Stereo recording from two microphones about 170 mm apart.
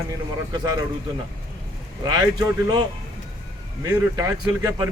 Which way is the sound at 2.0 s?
25° right (ahead or behind).